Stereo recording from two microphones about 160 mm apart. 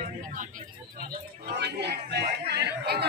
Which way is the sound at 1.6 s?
90° right.